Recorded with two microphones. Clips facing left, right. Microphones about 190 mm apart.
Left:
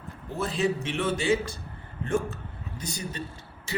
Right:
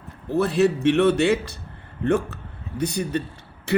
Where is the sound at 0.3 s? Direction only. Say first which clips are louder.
Right 8 dB; 65° right (ahead or behind).